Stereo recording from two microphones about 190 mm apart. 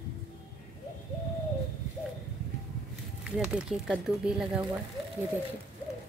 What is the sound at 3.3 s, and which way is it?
A woman's voice, 5° right (ahead or behind).